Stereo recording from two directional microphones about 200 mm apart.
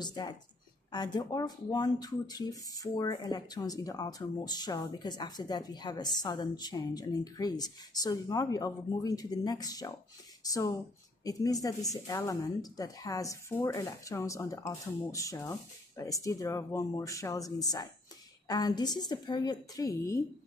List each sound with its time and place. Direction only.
0.0 s speech: 20° left (ahead or behind)